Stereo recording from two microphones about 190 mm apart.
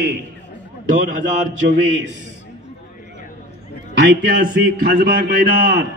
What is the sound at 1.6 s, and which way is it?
Mantra, 70° right (ahead or behind).